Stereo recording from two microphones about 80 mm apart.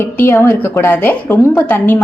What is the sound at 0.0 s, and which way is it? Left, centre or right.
A woman's voice, left.